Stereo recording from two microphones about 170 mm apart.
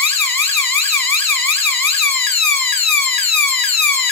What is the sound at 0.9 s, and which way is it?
Siren, 10° left (ahead or behind).